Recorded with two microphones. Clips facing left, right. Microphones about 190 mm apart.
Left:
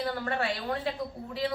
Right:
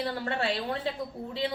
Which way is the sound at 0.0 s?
25° right (ahead or behind).